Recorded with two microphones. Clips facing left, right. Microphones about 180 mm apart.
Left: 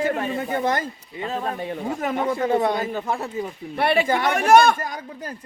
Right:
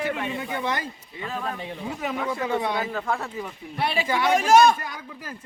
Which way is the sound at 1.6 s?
50° left (ahead or behind).